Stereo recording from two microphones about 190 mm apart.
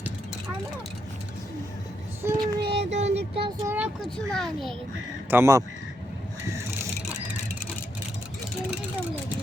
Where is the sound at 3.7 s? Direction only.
5° right (ahead or behind).